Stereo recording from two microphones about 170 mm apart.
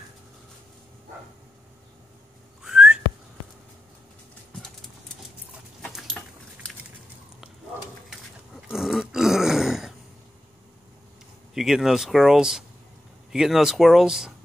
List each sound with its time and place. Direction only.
2.6 s whistling: 5° right (ahead or behind)
5.8 s a sound: centre (ahead or behind)
8.6 s grunt: centre (ahead or behind)
11.5 s speech: centre (ahead or behind)